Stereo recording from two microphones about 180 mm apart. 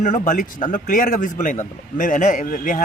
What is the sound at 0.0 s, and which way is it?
Speech, 50° left (ahead or behind).